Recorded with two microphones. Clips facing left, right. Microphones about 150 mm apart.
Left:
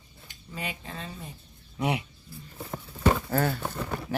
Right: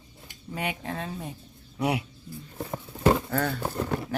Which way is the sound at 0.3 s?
65° right (ahead or behind).